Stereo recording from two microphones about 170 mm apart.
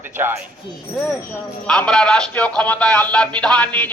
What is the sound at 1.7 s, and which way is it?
A man's voice, 5° left (ahead or behind).